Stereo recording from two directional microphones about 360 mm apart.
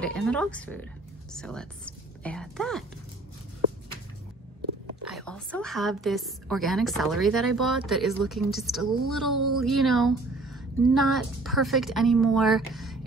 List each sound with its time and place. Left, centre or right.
0.0 s a woman's voice: centre
5.0 s a woman's voice: centre